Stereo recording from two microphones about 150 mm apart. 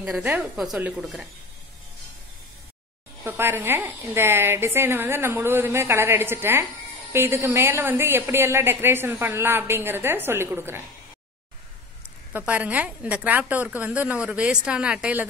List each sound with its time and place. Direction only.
0.0 s a woman's voice: 5° right (ahead or behind)
3.3 s a woman's voice: 15° right (ahead or behind)
12.3 s a woman's voice: 10° right (ahead or behind)